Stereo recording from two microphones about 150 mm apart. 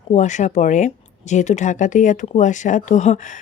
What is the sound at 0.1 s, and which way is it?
Speech, 50° left (ahead or behind).